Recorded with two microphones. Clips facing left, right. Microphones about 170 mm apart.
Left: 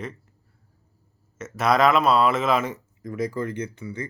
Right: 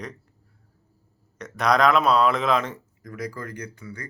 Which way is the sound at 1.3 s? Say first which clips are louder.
Left 1 dB; 5° left (ahead or behind).